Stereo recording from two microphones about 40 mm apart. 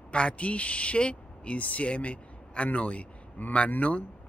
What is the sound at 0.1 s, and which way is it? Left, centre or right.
Speech, left.